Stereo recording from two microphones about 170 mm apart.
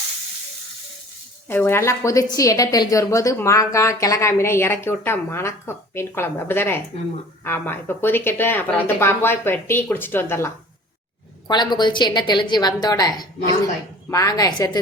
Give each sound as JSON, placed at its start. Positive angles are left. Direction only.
{"t": 1.5, "sound": "a woman's voice", "side_deg": 15}
{"t": 11.4, "sound": "a woman's voice", "side_deg": 25}